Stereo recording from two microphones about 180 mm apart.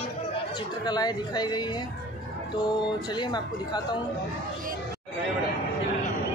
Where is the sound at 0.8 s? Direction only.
25° left (ahead or behind).